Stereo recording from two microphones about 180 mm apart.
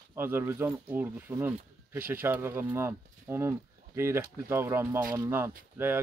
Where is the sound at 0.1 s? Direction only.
15° right (ahead or behind).